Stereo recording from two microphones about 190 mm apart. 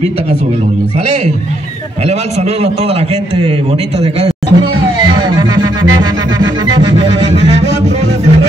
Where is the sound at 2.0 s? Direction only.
35° right (ahead or behind).